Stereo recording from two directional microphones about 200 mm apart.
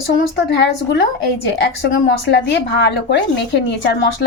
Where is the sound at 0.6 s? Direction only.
60° left (ahead or behind).